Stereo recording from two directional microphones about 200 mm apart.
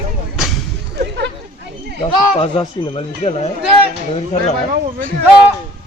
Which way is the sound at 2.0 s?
30° left (ahead or behind).